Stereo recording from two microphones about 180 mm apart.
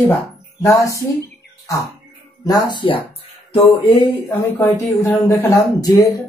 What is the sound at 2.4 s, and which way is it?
Speech, 25° left (ahead or behind).